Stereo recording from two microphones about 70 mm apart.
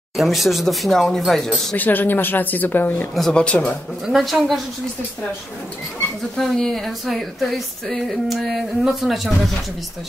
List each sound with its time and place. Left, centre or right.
0.2 s speech: centre
1.8 s speech: left
3.3 s speech: centre
4.1 s speech: centre
6.3 s speech: centre